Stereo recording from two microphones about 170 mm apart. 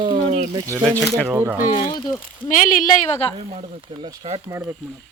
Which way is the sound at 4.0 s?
35° right (ahead or behind).